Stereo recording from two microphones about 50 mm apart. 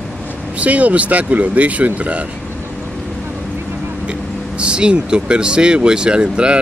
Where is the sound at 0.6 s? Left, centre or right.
Right.